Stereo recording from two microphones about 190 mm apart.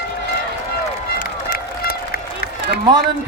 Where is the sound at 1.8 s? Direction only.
55° left (ahead or behind).